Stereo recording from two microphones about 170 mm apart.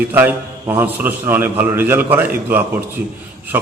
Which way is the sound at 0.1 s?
10° right (ahead or behind).